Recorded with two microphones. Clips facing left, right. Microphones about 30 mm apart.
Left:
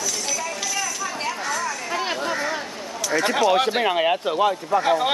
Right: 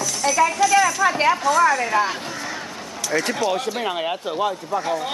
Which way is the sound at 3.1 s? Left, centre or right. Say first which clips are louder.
Left 1 dB; centre.